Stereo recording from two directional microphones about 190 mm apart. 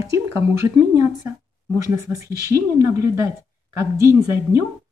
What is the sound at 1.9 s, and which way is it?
Speech, 15° right (ahead or behind).